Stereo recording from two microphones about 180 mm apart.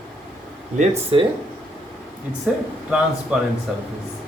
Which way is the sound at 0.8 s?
30° right (ahead or behind).